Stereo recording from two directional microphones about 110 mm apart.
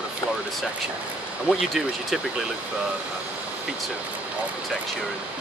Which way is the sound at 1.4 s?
Centre (ahead or behind).